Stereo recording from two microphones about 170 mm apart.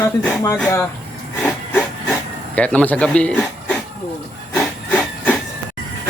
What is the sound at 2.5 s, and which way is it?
Speech, 5° left (ahead or behind).